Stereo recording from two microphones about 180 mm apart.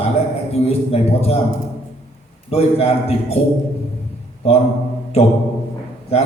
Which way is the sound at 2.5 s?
35° left (ahead or behind).